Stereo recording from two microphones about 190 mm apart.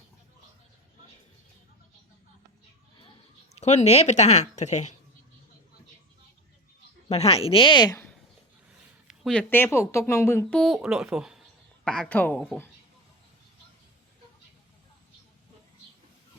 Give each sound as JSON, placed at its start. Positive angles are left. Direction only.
{"t": 3.5, "sound": "speech", "side_deg": 35}
{"t": 7.1, "sound": "speech", "side_deg": 30}
{"t": 9.0, "sound": "a woman's voice", "side_deg": 0}